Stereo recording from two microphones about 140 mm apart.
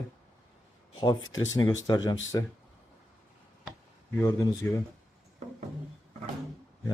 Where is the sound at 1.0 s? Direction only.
30° left (ahead or behind).